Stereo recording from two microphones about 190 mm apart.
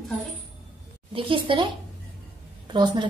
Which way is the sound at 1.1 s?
25° right (ahead or behind).